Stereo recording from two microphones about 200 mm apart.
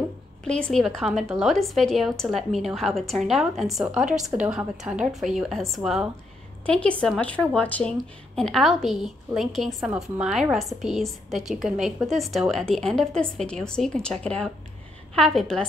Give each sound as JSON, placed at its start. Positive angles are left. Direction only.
{"t": 0.5, "sound": "a woman's voice", "side_deg": 5}